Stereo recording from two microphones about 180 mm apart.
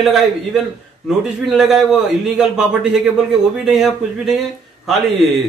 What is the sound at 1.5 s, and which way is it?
A man's voice, centre (ahead or behind).